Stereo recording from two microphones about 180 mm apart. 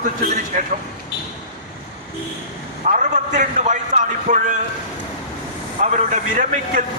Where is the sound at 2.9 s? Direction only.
45° right (ahead or behind).